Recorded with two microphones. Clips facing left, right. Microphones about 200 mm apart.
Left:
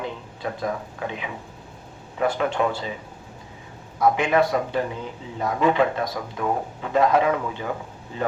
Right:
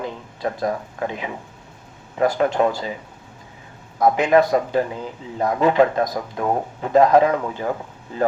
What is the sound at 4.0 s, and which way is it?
Speech, 40° right (ahead or behind).